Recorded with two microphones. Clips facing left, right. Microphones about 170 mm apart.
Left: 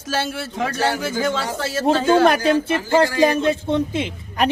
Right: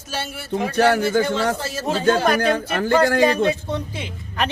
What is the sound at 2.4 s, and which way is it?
A man's voice, 60° right (ahead or behind).